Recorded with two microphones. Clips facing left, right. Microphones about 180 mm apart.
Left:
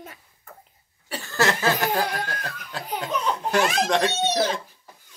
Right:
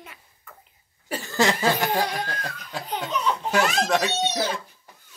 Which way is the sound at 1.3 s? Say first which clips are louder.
Right 1 dB; 15° right (ahead or behind).